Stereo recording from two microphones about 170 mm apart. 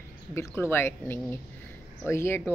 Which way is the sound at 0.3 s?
15° left (ahead or behind).